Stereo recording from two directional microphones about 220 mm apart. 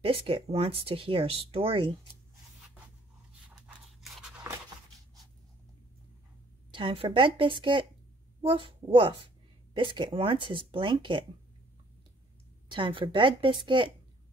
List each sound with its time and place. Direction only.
0.0 s speech: 25° right (ahead or behind)
3.4 s scissors: 5° right (ahead or behind)
6.7 s speech: 25° right (ahead or behind)
12.6 s speech: 20° right (ahead or behind)